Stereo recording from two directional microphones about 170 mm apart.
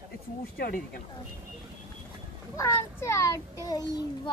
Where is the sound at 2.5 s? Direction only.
15° left (ahead or behind).